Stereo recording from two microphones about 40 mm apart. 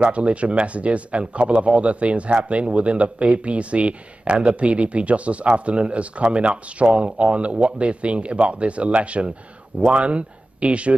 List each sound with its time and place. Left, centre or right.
0.0 s speech: right